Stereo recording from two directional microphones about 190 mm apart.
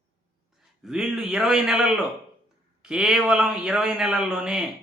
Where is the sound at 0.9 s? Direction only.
Centre (ahead or behind).